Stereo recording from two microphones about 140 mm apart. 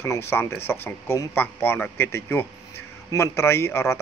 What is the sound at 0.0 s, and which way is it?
A man's voice, 20° left (ahead or behind).